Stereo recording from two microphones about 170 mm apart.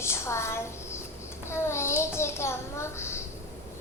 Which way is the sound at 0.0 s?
15° left (ahead or behind).